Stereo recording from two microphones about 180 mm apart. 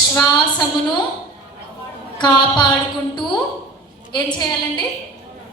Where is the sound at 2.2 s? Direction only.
25° left (ahead or behind).